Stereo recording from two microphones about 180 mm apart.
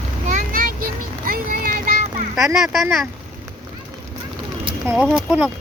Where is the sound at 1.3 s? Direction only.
50° right (ahead or behind).